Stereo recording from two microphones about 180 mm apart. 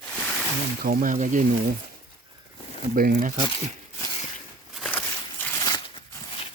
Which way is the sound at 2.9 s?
55° right (ahead or behind).